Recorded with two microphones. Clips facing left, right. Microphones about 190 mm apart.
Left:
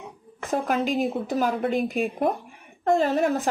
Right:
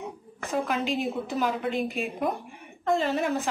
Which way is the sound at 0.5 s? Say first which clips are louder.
Left 3 dB; 45° left (ahead or behind).